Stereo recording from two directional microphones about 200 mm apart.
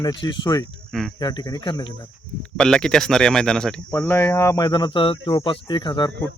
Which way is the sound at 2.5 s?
5° left (ahead or behind).